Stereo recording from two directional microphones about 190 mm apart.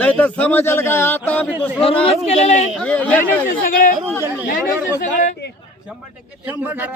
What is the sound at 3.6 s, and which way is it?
Speech, 45° left (ahead or behind).